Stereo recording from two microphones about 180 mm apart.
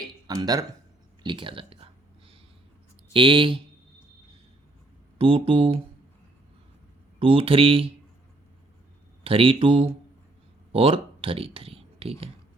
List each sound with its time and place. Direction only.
0.1 s a sound: 20° right (ahead or behind)
3.1 s speech: 30° right (ahead or behind)
5.1 s speech: 30° right (ahead or behind)
7.2 s speech: 30° right (ahead or behind)
9.2 s speech: 30° right (ahead or behind)